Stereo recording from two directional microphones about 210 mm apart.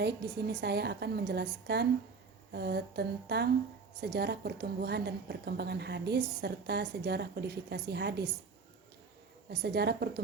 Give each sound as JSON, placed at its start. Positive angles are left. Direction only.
{"t": 0.0, "sound": "a woman's voice", "side_deg": -50}
{"t": 9.5, "sound": "a woman's voice", "side_deg": -50}